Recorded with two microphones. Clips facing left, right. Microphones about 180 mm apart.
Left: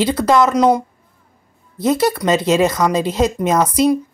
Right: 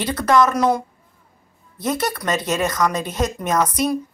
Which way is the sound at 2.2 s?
20° left (ahead or behind).